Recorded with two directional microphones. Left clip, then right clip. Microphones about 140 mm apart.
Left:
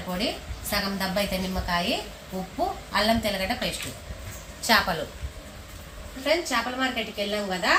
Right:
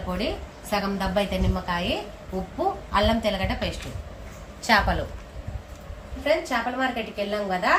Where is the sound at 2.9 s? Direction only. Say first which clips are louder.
Right 1 dB; 5° right (ahead or behind).